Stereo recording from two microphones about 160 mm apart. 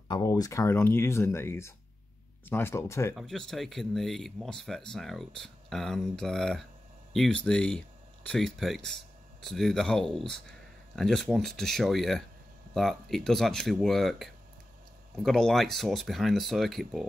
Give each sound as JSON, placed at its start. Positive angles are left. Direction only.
{"t": 0.1, "sound": "speech", "side_deg": 20}
{"t": 3.2, "sound": "speech", "side_deg": 0}